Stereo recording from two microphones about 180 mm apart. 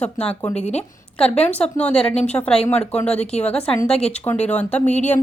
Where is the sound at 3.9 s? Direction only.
35° left (ahead or behind).